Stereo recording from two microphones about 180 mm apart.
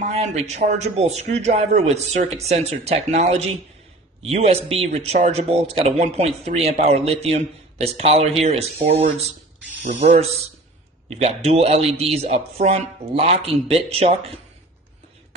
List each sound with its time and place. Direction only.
0.1 s speech: 40° right (ahead or behind)
9.8 s speech: 45° right (ahead or behind)